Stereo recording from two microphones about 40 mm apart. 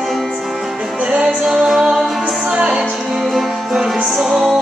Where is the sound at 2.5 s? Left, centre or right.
Right.